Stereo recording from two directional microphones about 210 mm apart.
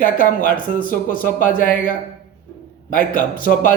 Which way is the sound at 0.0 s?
40° left (ahead or behind).